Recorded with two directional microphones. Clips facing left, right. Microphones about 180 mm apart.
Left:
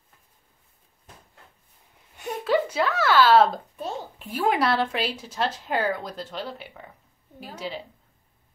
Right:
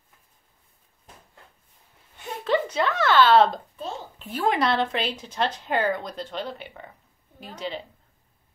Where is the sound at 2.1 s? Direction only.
10° left (ahead or behind).